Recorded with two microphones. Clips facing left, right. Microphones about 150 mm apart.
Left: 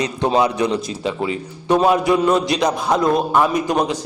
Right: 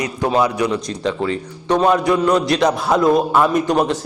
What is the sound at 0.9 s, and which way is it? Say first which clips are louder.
A man's voice: right 2 dB; 10° left (ahead or behind).